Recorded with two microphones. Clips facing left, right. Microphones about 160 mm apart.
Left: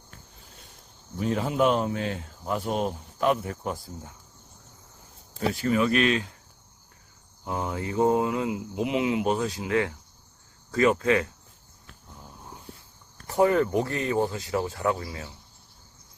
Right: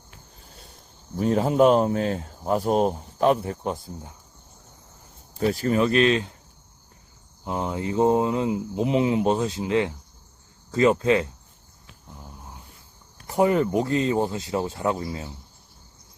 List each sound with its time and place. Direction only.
1.1 s speech: 40° right (ahead or behind); by 4.1 s 20° right (ahead or behind)
5.5 s speech: 40° right (ahead or behind)
7.4 s speech: 20° right (ahead or behind)
13.2 s speech: 20° right (ahead or behind)